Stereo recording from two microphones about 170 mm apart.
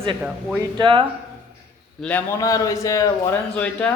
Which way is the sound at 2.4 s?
20° left (ahead or behind).